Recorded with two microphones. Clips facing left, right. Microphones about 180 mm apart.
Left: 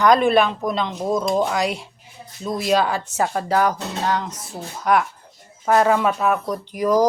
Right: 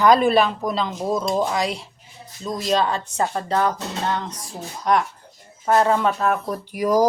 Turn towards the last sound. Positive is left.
turn(degrees=-10)  # may be behind; listen again after turning